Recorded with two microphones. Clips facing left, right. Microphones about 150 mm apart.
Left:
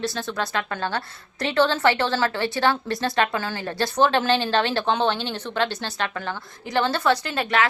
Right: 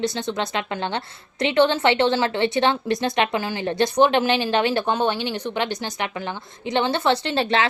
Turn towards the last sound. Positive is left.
turn(degrees=-25)  # may be behind; listen again after turning